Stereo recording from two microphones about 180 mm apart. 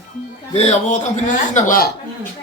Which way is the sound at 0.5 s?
40° left (ahead or behind).